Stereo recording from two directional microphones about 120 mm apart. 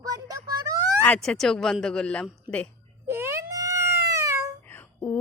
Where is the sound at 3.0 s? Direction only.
20° right (ahead or behind).